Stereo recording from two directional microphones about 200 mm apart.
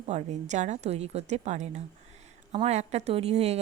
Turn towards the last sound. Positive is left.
turn(degrees=-30)  # may be behind; listen again after turning